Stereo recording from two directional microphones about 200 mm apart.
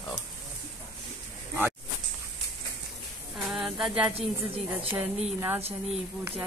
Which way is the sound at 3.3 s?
Centre (ahead or behind).